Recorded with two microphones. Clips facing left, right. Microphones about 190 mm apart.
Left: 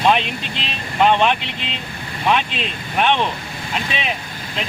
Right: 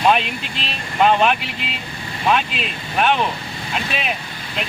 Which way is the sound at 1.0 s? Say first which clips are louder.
Even; 5° right (ahead or behind).